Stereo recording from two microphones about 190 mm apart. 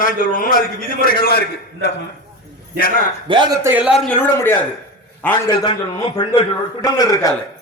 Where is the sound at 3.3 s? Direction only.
25° right (ahead or behind).